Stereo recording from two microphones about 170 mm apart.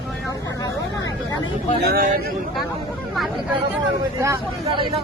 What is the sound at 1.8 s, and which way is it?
Speech, 55° right (ahead or behind).